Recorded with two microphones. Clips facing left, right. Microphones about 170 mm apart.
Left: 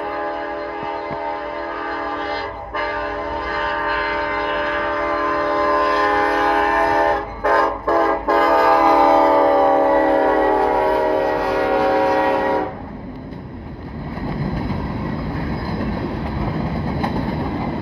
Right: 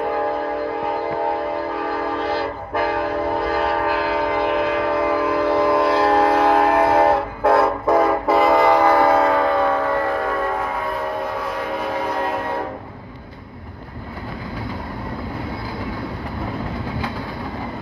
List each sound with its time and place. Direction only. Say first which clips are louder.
3.5 s train: right 3 dB; 30° right (ahead or behind)
4.9 s train: right 2 dB; 15° right (ahead or behind)
5.8 s train: right 2 dB; 25° right (ahead or behind); by 9.7 s 40° left (ahead or behind)
9.8 s train: left 7 dB; 55° left (ahead or behind)
10.7 s train: left 8 dB; 75° left (ahead or behind)